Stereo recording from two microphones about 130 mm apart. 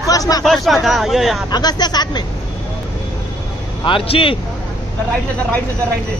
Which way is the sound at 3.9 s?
45° left (ahead or behind).